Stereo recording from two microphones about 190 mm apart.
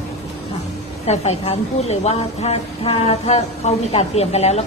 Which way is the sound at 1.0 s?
35° left (ahead or behind).